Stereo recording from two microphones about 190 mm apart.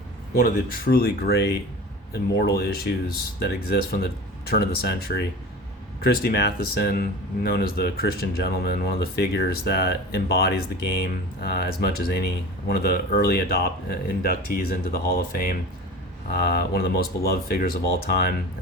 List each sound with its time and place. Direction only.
0.3 s speech: 50° left (ahead or behind)